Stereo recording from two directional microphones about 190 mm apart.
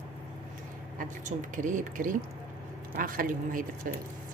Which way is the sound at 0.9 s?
45° right (ahead or behind).